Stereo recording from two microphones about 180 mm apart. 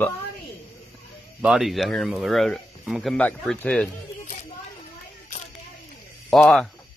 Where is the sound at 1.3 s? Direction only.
Centre (ahead or behind).